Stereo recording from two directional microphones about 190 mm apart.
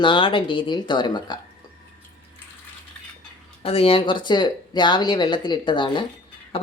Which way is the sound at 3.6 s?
30° left (ahead or behind).